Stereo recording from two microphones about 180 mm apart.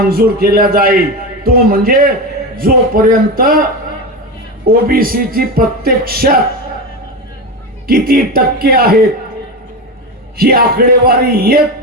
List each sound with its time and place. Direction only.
0.0 s a man's voice: 55° right (ahead or behind)
4.6 s speech: 55° right (ahead or behind)
7.9 s speech: 55° right (ahead or behind)
10.3 s speech: 55° right (ahead or behind)